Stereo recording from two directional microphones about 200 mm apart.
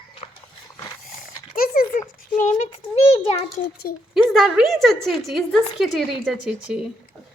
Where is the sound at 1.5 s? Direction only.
45° left (ahead or behind).